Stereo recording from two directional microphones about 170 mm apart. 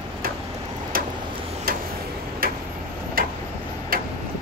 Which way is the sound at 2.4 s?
60° right (ahead or behind).